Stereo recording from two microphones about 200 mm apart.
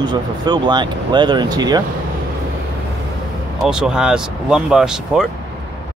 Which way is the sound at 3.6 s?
5° right (ahead or behind).